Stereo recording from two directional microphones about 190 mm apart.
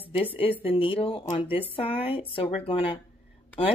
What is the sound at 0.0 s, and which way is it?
A woman's voice, 30° left (ahead or behind).